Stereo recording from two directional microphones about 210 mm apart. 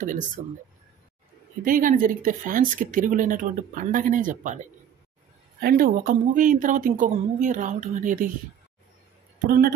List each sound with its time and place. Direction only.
0.0 s speech: 40° right (ahead or behind)
1.6 s speech: 40° right (ahead or behind)
9.5 s speech: 45° right (ahead or behind)